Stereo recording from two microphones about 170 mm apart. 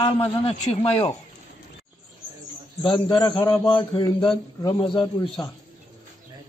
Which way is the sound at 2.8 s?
30° left (ahead or behind).